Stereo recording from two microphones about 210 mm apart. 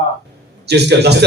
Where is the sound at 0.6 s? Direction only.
55° right (ahead or behind).